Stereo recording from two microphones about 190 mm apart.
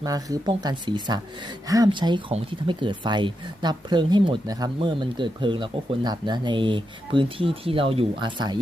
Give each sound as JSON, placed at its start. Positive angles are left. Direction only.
{"t": 0.0, "sound": "speech", "side_deg": -20}